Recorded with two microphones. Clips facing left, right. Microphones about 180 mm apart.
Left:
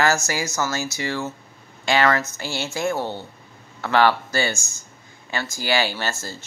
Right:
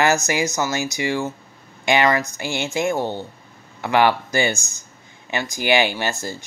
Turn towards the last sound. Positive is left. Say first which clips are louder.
# right 3 dB
turn(degrees=-15)  # may be behind; listen again after turning